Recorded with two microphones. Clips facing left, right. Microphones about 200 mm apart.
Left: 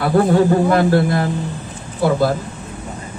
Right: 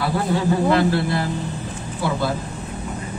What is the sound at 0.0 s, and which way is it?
A man's voice, 50° left (ahead or behind).